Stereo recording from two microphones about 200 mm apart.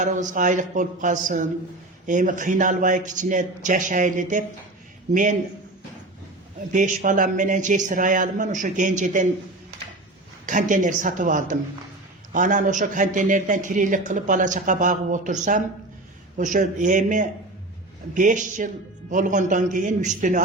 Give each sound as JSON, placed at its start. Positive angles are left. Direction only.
{"t": 0.0, "sound": "a man's voice", "side_deg": -40}
{"t": 6.7, "sound": "a man's voice", "side_deg": -40}
{"t": 10.4, "sound": "a man's voice", "side_deg": -40}